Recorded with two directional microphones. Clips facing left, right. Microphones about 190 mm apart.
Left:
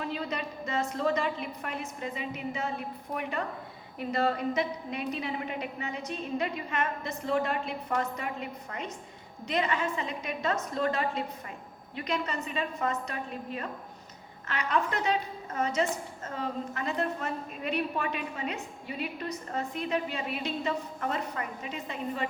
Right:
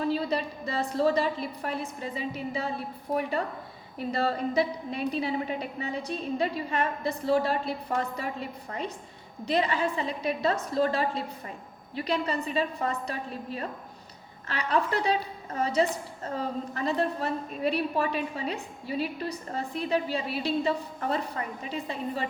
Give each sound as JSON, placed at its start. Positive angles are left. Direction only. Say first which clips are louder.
{"t": 0.0, "sound": "a woman's voice", "louder": "right 6 dB", "side_deg": -35}